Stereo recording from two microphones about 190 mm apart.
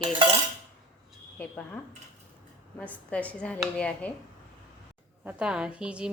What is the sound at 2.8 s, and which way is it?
Speech, 5° left (ahead or behind).